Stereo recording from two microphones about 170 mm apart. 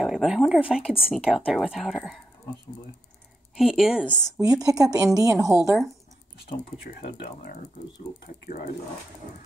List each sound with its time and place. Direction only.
0.0 s speech: 5° right (ahead or behind)
3.5 s speech: 5° right (ahead or behind)
4.4 s speech: 20° right (ahead or behind)
6.8 s speech: 70° left (ahead or behind)